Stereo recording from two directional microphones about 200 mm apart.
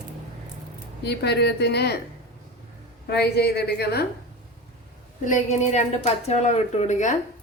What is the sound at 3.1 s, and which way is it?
Speech, 55° left (ahead or behind).